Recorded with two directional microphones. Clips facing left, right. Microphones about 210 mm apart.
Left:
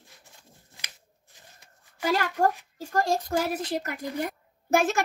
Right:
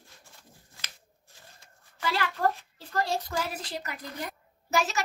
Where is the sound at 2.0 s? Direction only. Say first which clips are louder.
Left 4 dB; 45° left (ahead or behind).